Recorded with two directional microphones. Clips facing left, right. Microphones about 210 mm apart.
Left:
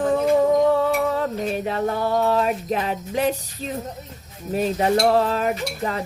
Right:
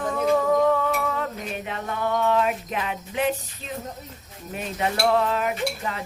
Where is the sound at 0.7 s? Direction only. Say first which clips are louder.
Left 5 dB; 35° left (ahead or behind).